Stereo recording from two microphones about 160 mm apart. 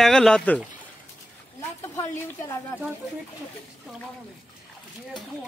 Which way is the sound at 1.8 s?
15° left (ahead or behind).